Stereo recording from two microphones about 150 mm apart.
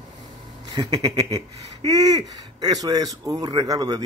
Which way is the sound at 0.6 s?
30° right (ahead or behind).